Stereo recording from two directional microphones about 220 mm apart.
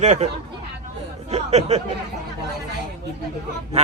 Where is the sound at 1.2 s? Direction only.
30° right (ahead or behind).